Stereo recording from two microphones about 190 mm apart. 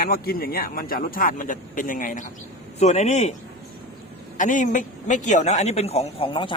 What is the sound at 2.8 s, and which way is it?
Speech, 35° left (ahead or behind).